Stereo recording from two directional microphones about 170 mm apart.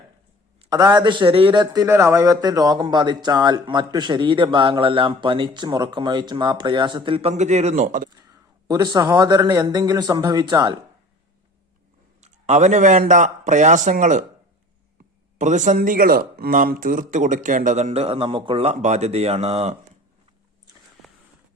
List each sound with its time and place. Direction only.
0.7 s speech: 25° right (ahead or behind); by 8.1 s 50° right (ahead or behind)
8.1 s speech: 20° right (ahead or behind)
12.2 s speech: 45° right (ahead or behind)
15.4 s speech: 45° right (ahead or behind)